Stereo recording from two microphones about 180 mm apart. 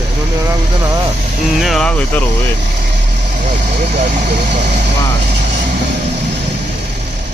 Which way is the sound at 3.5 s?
45° right (ahead or behind).